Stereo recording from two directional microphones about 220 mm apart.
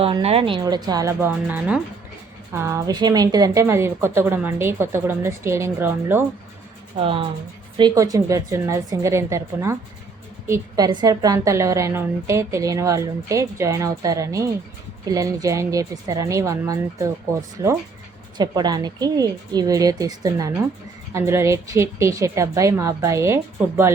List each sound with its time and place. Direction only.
0.0 s a woman's voice: 25° right (ahead or behind); by 6.2 s 10° right (ahead or behind)
7.0 s a woman's voice: 25° right (ahead or behind)